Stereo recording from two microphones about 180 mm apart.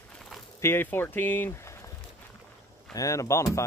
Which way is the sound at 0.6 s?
15° left (ahead or behind).